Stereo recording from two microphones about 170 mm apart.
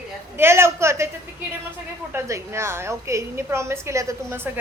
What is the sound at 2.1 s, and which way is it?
A woman's voice, 15° right (ahead or behind).